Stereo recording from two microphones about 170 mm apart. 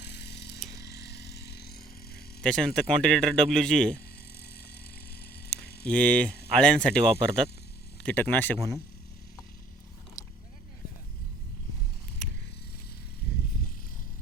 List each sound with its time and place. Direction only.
0.1 s a sound: 75° left (ahead or behind)
0.8 s vehicle: 75° left (ahead or behind)
2.4 s a man's voice: 5° left (ahead or behind)
5.2 s bicycle: 70° left (ahead or behind)
5.8 s a man's voice: 5° left (ahead or behind)
10.2 s a sound: 20° left (ahead or behind)